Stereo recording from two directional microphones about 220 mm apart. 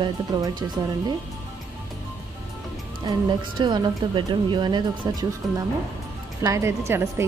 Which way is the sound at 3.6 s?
20° right (ahead or behind).